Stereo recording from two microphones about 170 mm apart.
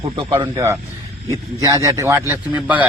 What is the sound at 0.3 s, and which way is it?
A man's voice, 15° right (ahead or behind).